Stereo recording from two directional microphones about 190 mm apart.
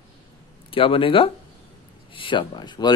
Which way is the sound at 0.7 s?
30° left (ahead or behind).